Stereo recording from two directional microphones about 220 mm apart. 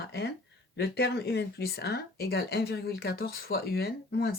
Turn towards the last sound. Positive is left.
turn(degrees=45)  # may be behind; listen again after turning